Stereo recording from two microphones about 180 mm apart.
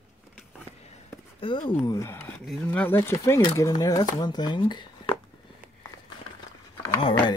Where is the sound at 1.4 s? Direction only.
30° left (ahead or behind).